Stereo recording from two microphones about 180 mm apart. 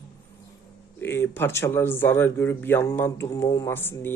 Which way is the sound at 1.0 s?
10° left (ahead or behind).